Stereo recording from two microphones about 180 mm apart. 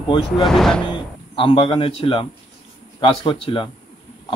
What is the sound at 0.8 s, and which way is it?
Speech, 30° left (ahead or behind).